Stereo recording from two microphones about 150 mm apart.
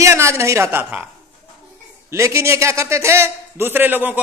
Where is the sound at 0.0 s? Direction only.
20° right (ahead or behind).